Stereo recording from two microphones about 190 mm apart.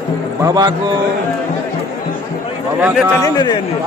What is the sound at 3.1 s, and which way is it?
Speech, 20° left (ahead or behind).